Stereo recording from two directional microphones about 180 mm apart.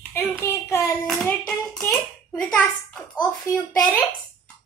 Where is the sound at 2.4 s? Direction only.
Centre (ahead or behind).